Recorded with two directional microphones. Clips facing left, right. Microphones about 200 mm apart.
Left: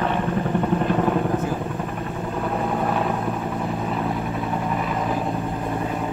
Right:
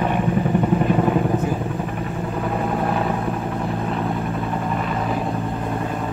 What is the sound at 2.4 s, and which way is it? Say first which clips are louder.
Vehicle: right 1 dB; centre (ahead or behind).